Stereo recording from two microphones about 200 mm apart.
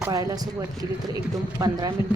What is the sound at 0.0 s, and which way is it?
Speech, 15° right (ahead or behind).